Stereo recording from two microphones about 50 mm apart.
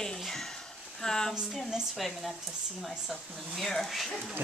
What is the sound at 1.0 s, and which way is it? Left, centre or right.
Speech, centre.